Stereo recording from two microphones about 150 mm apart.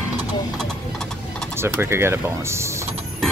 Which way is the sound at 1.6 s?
15° right (ahead or behind).